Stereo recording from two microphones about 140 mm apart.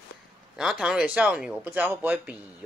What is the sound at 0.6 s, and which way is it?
Speech, 5° right (ahead or behind).